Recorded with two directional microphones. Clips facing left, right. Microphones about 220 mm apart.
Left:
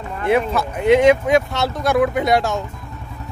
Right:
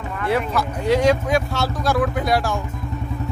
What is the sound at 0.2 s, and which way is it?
Speech, 25° left (ahead or behind).